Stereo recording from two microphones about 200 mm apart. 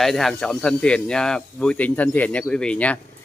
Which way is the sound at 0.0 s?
Centre (ahead or behind).